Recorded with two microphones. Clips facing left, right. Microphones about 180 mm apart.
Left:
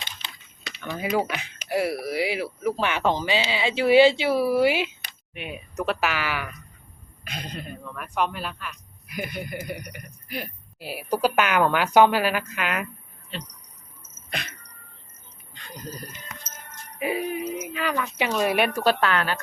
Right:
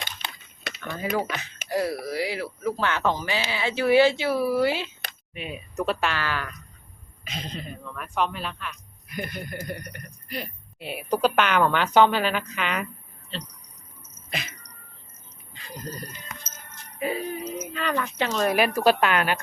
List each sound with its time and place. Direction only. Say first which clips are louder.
0.0 s a sound: right 4 dB; 50° right (ahead or behind)
0.8 s speech: left 2 dB; 10° left (ahead or behind)
5.3 s speech: even; centre (ahead or behind)
14.3 s music: even; centre (ahead or behind)
15.5 s a sound: right 2 dB; centre (ahead or behind)
17.0 s speech: left 2 dB; 15° left (ahead or behind); by 19.4 s 10° right (ahead or behind)